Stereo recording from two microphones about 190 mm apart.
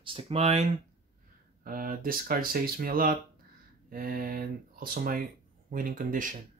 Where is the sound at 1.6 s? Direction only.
50° right (ahead or behind).